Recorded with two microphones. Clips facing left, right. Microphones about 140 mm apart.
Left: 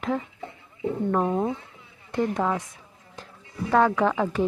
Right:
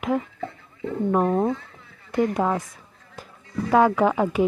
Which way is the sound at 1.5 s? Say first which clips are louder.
Right 2 dB; 20° left (ahead or behind).